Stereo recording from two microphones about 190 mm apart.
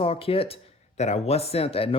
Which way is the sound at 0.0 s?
30° left (ahead or behind).